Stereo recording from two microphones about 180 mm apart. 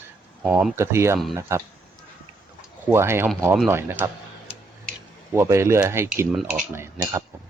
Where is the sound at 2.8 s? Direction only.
15° right (ahead or behind).